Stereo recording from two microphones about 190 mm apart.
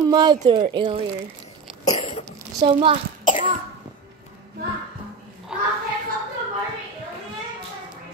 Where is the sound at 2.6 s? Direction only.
25° right (ahead or behind).